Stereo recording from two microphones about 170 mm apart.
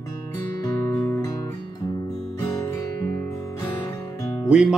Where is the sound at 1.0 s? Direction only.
10° left (ahead or behind).